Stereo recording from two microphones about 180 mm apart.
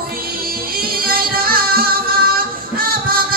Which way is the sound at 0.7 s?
55° right (ahead or behind).